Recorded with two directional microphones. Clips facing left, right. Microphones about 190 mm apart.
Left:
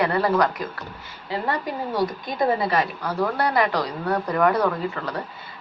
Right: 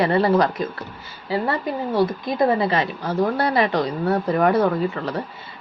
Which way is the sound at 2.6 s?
25° right (ahead or behind).